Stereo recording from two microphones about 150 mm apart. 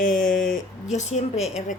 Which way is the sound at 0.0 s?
65° left (ahead or behind).